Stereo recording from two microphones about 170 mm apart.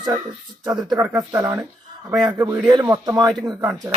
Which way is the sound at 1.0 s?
15° right (ahead or behind).